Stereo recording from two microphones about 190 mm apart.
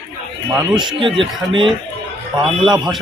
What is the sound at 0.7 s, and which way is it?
Speech, 25° right (ahead or behind).